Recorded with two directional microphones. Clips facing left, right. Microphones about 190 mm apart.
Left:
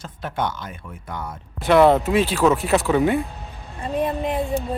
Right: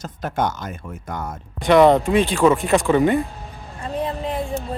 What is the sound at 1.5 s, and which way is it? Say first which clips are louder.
Speech: right 1 dB; 5° left (ahead or behind).